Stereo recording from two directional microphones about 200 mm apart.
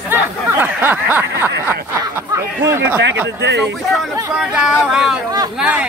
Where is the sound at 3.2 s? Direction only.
60° right (ahead or behind).